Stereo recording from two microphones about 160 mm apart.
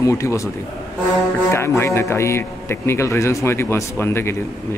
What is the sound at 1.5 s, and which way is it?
A man's voice, 15° left (ahead or behind).